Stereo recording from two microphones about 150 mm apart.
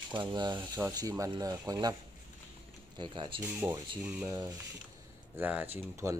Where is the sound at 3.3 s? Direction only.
15° right (ahead or behind).